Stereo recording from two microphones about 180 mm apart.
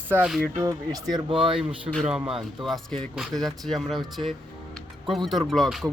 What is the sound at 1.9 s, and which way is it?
Speech, centre (ahead or behind).